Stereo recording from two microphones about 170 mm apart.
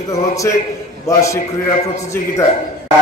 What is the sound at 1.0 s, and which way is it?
A man's voice, 15° left (ahead or behind).